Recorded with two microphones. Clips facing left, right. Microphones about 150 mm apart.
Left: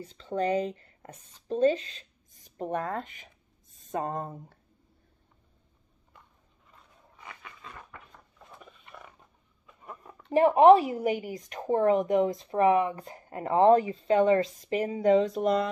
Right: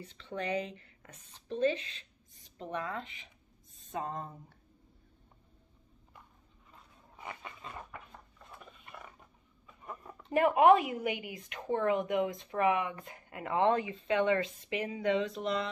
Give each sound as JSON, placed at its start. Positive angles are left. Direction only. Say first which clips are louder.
{"t": 0.0, "sound": "speech", "louder": "left 9 dB", "side_deg": 40}
{"t": 7.2, "sound": "dog", "louder": "right 3 dB", "side_deg": -25}
{"t": 8.5, "sound": "dog", "louder": "left 1 dB", "side_deg": 0}
{"t": 9.7, "sound": "a sound", "louder": "even", "side_deg": 0}
{"t": 10.3, "sound": "speech", "louder": "left 6 dB", "side_deg": 30}